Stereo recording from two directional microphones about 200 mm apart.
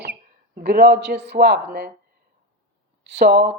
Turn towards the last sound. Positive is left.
turn(degrees=-60)  # may be behind; listen again after turning